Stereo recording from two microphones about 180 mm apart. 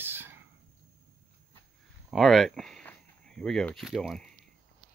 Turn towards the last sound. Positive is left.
turn(degrees=0)  # may be behind; listen again after turning